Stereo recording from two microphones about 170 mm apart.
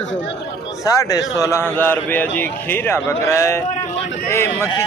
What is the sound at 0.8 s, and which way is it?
A man's voice, 20° left (ahead or behind).